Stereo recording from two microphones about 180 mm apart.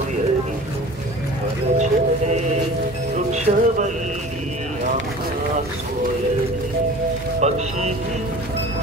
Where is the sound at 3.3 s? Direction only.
40° right (ahead or behind).